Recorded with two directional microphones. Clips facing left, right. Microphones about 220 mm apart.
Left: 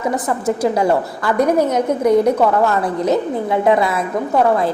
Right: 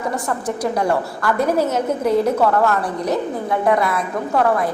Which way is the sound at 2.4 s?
20° left (ahead or behind).